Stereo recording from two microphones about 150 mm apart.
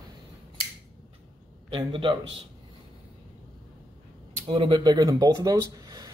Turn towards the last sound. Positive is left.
turn(degrees=-25)  # may be behind; listen again after turning